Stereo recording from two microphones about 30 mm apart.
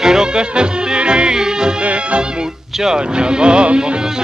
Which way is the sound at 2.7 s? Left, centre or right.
Centre.